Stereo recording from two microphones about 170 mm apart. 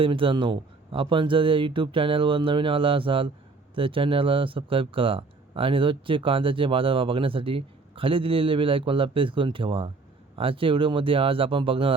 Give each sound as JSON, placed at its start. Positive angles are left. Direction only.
{"t": 0.0, "sound": "speech", "side_deg": -30}